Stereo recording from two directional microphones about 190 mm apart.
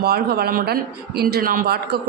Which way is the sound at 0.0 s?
55° right (ahead or behind).